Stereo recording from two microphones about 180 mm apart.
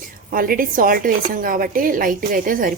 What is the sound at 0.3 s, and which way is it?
A woman's voice, 50° right (ahead or behind).